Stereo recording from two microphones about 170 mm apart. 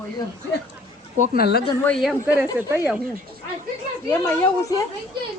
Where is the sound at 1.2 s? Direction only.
60° left (ahead or behind).